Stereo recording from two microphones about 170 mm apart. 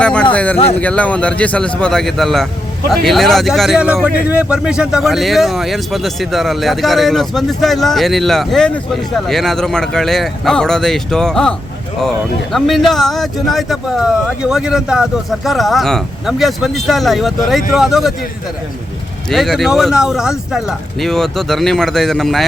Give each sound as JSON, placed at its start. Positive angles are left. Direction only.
{"t": 0.0, "sound": "speech", "side_deg": 5}
{"t": 19.3, "sound": "speech", "side_deg": 0}